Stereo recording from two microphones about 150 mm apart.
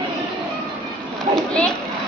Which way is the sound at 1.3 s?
5° left (ahead or behind).